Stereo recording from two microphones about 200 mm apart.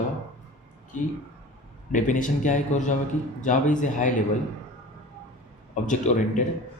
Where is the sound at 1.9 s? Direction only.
40° left (ahead or behind).